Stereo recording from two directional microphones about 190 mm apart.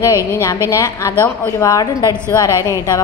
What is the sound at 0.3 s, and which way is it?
A woman's voice, 15° left (ahead or behind).